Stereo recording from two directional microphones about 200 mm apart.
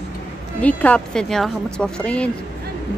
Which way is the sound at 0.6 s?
5° left (ahead or behind).